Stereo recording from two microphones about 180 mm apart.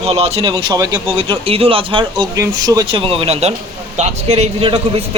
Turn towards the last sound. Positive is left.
turn(degrees=-30)  # may be behind; listen again after turning